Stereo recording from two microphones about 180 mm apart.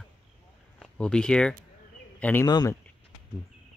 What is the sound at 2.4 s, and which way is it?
Speech, 20° left (ahead or behind).